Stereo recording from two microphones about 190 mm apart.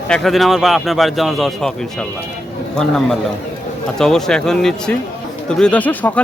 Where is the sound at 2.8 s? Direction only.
5° left (ahead or behind).